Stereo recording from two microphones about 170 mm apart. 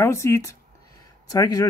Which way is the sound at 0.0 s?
15° left (ahead or behind).